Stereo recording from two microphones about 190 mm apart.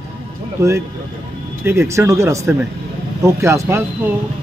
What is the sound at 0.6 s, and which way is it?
Speech, 15° right (ahead or behind).